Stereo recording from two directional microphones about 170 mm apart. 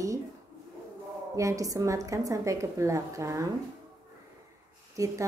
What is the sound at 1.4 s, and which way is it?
A woman's voice, 20° right (ahead or behind).